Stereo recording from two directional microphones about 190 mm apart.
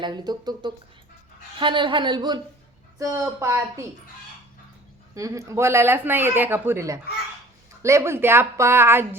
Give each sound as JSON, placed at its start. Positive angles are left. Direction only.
{"t": 0.0, "sound": "a woman's voice", "side_deg": -20}
{"t": 5.1, "sound": "speech", "side_deg": -15}